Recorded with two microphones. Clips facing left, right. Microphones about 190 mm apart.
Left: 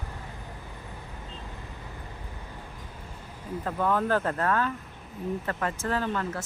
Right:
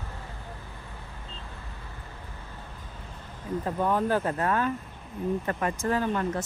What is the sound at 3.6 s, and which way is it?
Speech, 15° right (ahead or behind).